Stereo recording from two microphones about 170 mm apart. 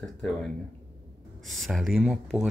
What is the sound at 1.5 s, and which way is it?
Speech, centre (ahead or behind).